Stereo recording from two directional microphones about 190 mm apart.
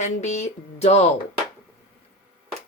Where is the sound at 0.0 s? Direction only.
35° left (ahead or behind).